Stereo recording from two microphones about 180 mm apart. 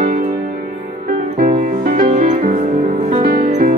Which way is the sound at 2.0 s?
40° right (ahead or behind).